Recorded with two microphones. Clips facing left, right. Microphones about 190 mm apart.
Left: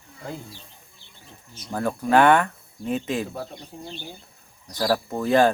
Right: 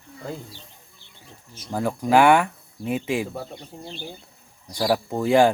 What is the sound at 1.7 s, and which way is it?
Speech, 10° right (ahead or behind).